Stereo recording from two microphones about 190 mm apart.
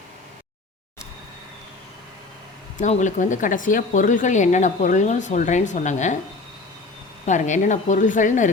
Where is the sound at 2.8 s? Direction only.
40° left (ahead or behind).